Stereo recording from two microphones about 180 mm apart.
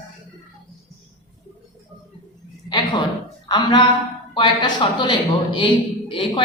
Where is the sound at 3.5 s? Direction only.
25° left (ahead or behind).